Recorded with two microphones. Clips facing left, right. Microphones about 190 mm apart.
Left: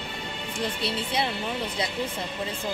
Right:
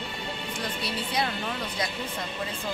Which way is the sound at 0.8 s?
25° left (ahead or behind).